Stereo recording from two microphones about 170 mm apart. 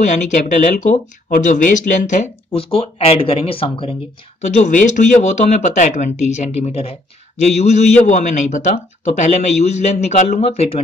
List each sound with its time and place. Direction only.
0.0 s a man's voice: 45° left (ahead or behind)
2.5 s speech: 35° left (ahead or behind)
4.4 s a man's voice: 45° left (ahead or behind)